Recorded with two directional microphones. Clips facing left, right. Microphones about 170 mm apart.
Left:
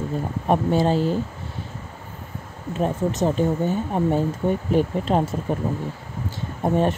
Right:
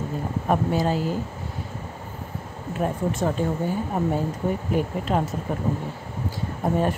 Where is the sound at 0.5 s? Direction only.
25° left (ahead or behind).